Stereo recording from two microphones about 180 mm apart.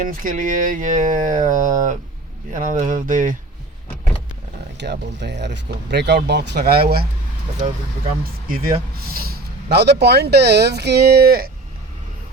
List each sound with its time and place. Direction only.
0.0 s speech: 50° right (ahead or behind)
4.8 s speech: 70° right (ahead or behind)
8.2 s speech: 50° right (ahead or behind)
9.2 s speech: 65° right (ahead or behind)